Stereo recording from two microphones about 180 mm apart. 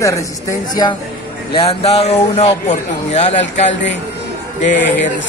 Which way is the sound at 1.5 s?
35° left (ahead or behind).